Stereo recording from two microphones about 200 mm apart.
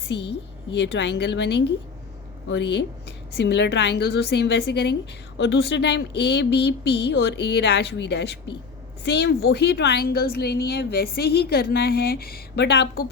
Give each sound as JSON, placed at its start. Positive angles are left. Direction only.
{"t": 0.0, "sound": "a woman's voice", "side_deg": 60}